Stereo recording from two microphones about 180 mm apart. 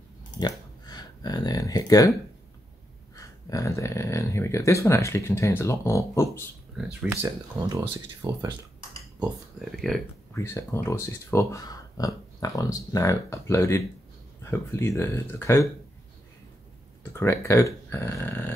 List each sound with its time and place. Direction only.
0.4 s speech: 20° left (ahead or behind)
3.4 s speech: 15° left (ahead or behind)
6.8 s speech: 5° right (ahead or behind)
7.1 s speech: 20° right (ahead or behind)
9.7 s speech: centre (ahead or behind)
10.3 s speech: 15° left (ahead or behind)
17.1 s speech: 15° left (ahead or behind)